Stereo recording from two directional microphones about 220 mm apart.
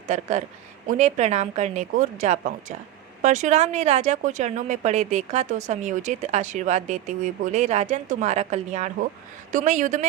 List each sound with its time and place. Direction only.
0.1 s speech: 30° right (ahead or behind)